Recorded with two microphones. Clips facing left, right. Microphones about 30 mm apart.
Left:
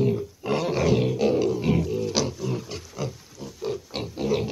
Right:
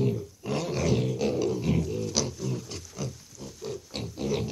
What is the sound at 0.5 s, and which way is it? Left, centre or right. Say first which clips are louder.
Roar: left 5 dB; centre.